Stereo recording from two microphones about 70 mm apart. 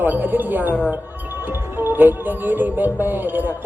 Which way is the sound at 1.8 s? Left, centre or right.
Right.